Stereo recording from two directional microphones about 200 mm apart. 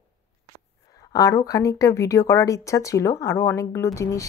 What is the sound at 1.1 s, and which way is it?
Speech, 15° left (ahead or behind).